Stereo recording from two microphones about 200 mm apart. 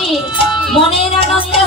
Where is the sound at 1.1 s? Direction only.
25° left (ahead or behind).